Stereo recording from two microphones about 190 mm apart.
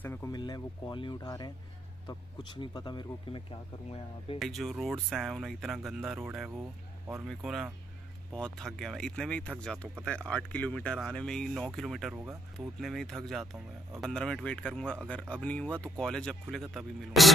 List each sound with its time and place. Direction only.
0.0 s speech: 10° left (ahead or behind)
0.3 s speech: 20° left (ahead or behind)
4.4 s speech: centre (ahead or behind)